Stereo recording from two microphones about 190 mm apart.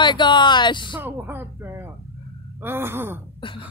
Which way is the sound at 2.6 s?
10° right (ahead or behind).